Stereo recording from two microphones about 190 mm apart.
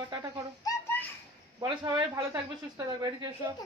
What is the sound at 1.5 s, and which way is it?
Speech, 20° right (ahead or behind).